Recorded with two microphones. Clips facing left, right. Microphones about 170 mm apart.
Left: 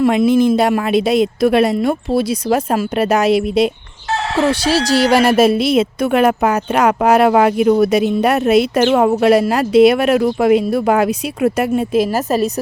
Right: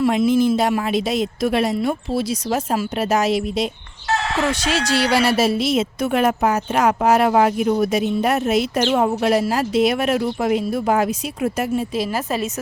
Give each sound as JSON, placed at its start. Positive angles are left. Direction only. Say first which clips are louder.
{"t": 0.0, "sound": "a woman's voice", "louder": "left 4 dB", "side_deg": 60}
{"t": 4.6, "sound": "a woman's voice", "louder": "left 6 dB", "side_deg": 35}